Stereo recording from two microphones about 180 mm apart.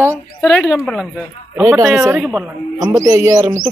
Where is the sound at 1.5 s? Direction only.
15° right (ahead or behind).